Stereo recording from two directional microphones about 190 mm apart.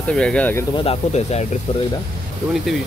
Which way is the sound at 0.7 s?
30° left (ahead or behind).